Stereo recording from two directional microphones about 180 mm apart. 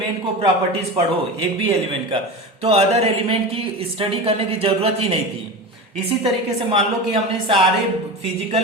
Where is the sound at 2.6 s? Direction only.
35° right (ahead or behind).